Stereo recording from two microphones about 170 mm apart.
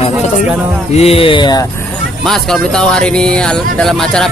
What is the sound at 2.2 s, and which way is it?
A man's voice, centre (ahead or behind).